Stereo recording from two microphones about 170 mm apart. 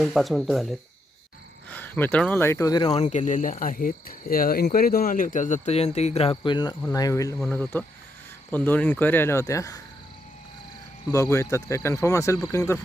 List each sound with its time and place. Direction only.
0.0 s speech: centre (ahead or behind)
1.7 s speech: 10° left (ahead or behind)
2.8 s speech: 40° left (ahead or behind); by 9.8 s 20° left (ahead or behind)
11.1 s speech: 15° left (ahead or behind)